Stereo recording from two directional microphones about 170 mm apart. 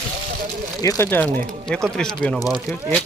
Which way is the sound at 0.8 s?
20° left (ahead or behind).